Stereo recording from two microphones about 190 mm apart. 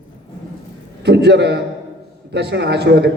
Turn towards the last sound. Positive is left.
turn(degrees=-65)  # may be behind; listen again after turning